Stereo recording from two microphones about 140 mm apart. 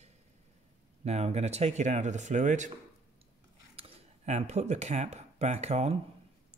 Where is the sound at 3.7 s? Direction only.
50° right (ahead or behind).